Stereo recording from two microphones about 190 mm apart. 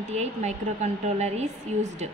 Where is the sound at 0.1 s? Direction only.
35° right (ahead or behind).